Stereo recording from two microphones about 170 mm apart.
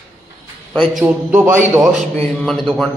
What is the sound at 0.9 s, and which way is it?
Speech, 10° right (ahead or behind).